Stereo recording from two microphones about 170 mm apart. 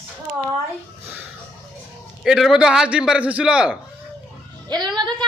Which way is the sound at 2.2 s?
Centre (ahead or behind).